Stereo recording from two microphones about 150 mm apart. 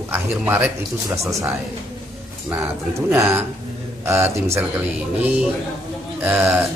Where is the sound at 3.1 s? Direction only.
15° right (ahead or behind).